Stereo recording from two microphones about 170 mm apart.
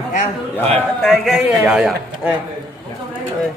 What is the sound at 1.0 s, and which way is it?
A man's voice, centre (ahead or behind).